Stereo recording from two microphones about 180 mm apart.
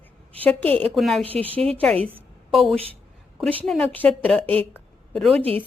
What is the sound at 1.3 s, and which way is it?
Speech, 30° right (ahead or behind).